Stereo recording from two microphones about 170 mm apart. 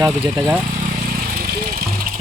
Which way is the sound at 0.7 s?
55° right (ahead or behind).